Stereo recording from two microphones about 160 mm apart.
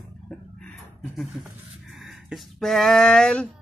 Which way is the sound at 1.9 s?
Centre (ahead or behind).